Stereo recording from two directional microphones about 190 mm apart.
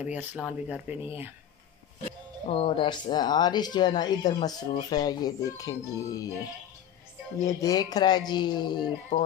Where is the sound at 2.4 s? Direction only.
30° left (ahead or behind).